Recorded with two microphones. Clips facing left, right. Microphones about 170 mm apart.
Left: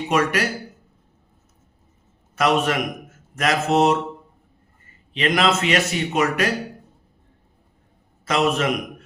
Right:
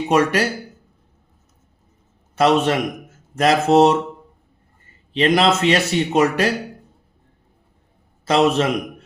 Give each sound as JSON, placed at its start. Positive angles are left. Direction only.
{"t": 0.1, "sound": "speech", "side_deg": -35}
{"t": 2.3, "sound": "a man's voice", "side_deg": -30}
{"t": 5.1, "sound": "speech", "side_deg": -30}
{"t": 8.2, "sound": "a man's voice", "side_deg": -30}